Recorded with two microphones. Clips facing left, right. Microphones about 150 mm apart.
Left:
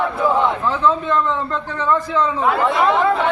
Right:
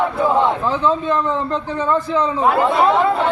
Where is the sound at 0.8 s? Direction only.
20° right (ahead or behind).